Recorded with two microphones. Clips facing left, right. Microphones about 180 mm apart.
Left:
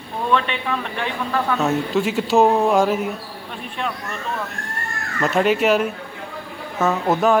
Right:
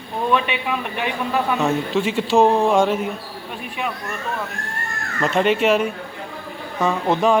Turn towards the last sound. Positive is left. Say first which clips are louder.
# even
turn(degrees=5)  # may be behind; listen again after turning